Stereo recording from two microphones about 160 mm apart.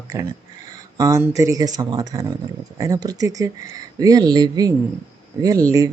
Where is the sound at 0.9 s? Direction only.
20° right (ahead or behind).